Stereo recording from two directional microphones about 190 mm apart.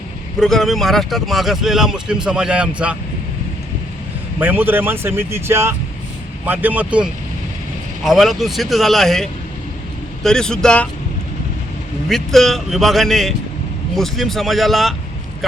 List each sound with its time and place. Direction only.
0.3 s speech: centre (ahead or behind)
4.4 s speech: 10° right (ahead or behind)
12.0 s speech: centre (ahead or behind)